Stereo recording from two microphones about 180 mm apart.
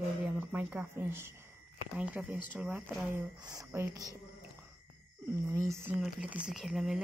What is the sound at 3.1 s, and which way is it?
Speech, 20° right (ahead or behind).